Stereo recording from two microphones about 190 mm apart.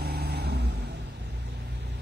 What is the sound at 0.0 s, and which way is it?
Vehicle, 55° right (ahead or behind).